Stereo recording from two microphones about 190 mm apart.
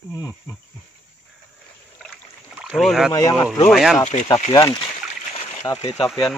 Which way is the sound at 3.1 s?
15° left (ahead or behind).